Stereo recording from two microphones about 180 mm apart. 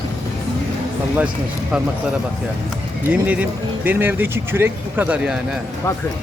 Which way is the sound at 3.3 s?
10° right (ahead or behind).